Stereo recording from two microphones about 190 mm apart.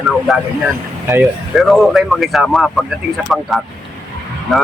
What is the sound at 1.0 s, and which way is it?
Speech, 10° right (ahead or behind).